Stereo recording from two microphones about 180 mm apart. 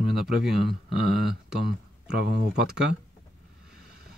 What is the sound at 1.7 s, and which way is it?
Speech, 60° right (ahead or behind).